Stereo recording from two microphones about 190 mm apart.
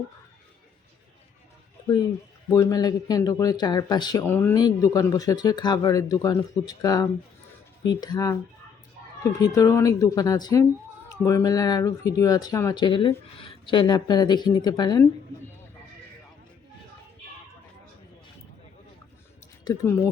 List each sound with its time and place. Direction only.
2.5 s speech: 15° left (ahead or behind)
4.2 s speech: 10° left (ahead or behind)
9.6 s speech: 15° left (ahead or behind)
19.6 s speech: 15° left (ahead or behind)